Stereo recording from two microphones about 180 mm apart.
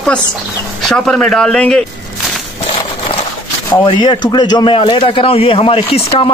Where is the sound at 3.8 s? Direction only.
25° left (ahead or behind).